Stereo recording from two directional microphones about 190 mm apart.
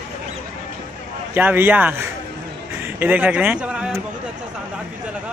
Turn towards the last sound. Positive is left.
turn(degrees=-5)  # may be behind; listen again after turning